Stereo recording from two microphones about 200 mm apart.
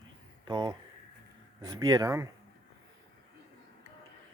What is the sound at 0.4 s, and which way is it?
Speech, 20° right (ahead or behind).